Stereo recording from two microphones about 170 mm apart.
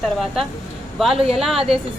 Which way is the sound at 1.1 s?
35° right (ahead or behind).